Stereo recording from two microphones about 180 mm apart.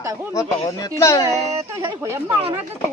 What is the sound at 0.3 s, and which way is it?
Speech, 20° left (ahead or behind).